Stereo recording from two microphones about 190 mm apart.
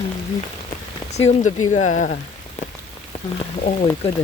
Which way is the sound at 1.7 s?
40° left (ahead or behind).